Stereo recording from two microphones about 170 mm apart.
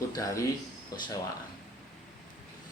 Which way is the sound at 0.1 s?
20° left (ahead or behind).